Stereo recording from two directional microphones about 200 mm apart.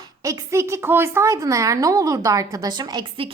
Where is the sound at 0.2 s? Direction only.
15° right (ahead or behind).